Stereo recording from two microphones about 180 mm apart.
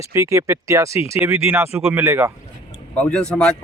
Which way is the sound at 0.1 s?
15° right (ahead or behind).